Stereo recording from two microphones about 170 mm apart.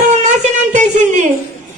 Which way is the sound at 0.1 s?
45° right (ahead or behind).